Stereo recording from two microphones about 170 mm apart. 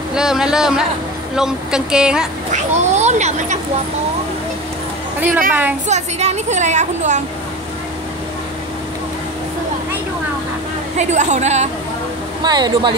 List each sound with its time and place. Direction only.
0.1 s speech: 5° right (ahead or behind)
2.5 s a woman's voice: 40° right (ahead or behind)
5.5 s a woman's voice: 10° right (ahead or behind)
5.9 s a woman's voice: 40° right (ahead or behind)
11.0 s a woman's voice: 45° right (ahead or behind)
12.4 s speech: 25° right (ahead or behind)